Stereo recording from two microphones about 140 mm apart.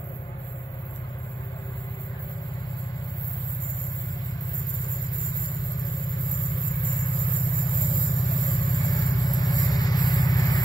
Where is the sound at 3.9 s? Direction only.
25° left (ahead or behind).